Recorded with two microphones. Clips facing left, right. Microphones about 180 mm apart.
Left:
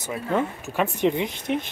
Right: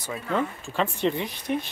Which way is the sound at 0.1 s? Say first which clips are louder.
Left 2 dB; 15° left (ahead or behind).